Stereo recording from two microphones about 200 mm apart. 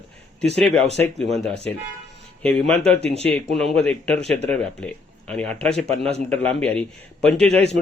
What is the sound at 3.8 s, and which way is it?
Speech, 5° left (ahead or behind).